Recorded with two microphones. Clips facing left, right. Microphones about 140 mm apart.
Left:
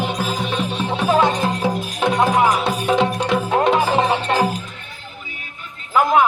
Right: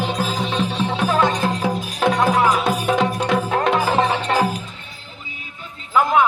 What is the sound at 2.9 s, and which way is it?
Music, centre (ahead or behind).